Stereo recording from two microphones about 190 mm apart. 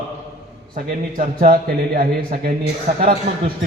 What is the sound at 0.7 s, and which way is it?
A man's voice, 50° right (ahead or behind).